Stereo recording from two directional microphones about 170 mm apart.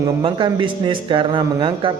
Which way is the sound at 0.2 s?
30° right (ahead or behind).